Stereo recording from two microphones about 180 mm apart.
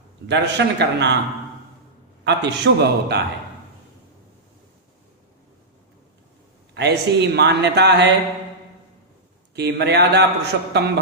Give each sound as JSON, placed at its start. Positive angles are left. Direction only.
{"t": 0.3, "sound": "a man's voice", "side_deg": -70}
{"t": 2.2, "sound": "a man's voice", "side_deg": -70}
{"t": 6.7, "sound": "a man's voice", "side_deg": -70}
{"t": 9.6, "sound": "a man's voice", "side_deg": -70}